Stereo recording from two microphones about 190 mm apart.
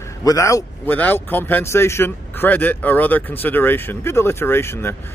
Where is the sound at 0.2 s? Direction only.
15° left (ahead or behind).